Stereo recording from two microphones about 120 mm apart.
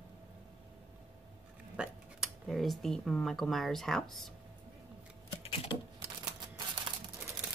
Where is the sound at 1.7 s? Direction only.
10° right (ahead or behind).